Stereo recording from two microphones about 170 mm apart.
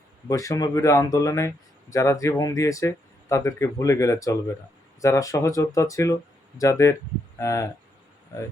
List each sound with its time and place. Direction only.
0.3 s speech: 20° left (ahead or behind)